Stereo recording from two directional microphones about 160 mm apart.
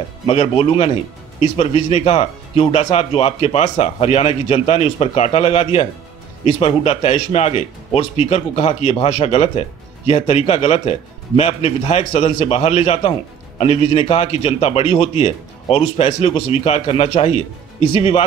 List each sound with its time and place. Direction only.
0.3 s speech: 35° left (ahead or behind)